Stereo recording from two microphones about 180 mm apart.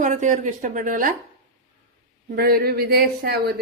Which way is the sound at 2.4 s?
55° right (ahead or behind).